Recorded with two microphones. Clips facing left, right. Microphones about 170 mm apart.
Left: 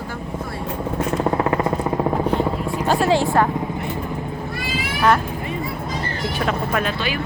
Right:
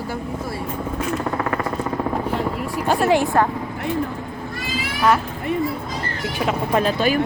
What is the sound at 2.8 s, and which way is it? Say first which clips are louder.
Speech: right 1 dB; 15° right (ahead or behind).